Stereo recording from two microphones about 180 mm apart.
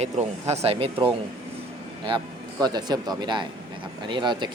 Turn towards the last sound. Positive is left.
turn(degrees=-25)  # may be behind; listen again after turning